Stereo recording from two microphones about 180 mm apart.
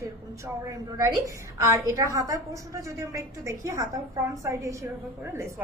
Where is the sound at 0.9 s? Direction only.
20° right (ahead or behind).